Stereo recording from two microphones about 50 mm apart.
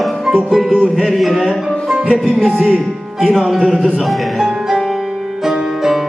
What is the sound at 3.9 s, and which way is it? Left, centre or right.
Music, centre.